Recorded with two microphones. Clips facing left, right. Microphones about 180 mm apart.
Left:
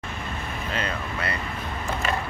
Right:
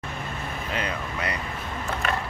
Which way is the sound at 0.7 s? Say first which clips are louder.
Even; 15° right (ahead or behind).